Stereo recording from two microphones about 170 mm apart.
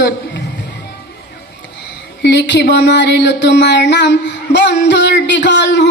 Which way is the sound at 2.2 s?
85° left.